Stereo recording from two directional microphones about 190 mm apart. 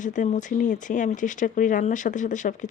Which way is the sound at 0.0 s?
40° left (ahead or behind).